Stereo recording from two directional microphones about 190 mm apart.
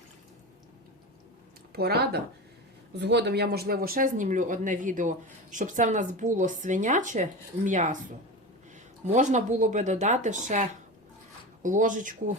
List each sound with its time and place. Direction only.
1.7 s speech: 55° right (ahead or behind); by 7.9 s 40° right (ahead or behind)
9.1 s speech: 40° right (ahead or behind)